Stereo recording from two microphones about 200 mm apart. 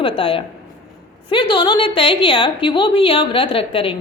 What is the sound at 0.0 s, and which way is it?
A woman's voice, 25° left (ahead or behind).